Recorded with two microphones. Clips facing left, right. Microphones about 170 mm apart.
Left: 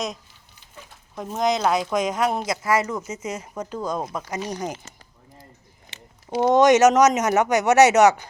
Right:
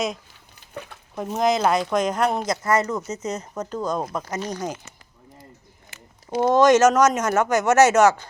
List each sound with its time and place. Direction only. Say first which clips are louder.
0.7 s a sound: right 9 dB; 65° right (ahead or behind)
1.1 s speech: right 2 dB; centre (ahead or behind)
4.3 s speech: even; 15° left (ahead or behind)
6.5 s speech: left 1 dB; 15° left (ahead or behind)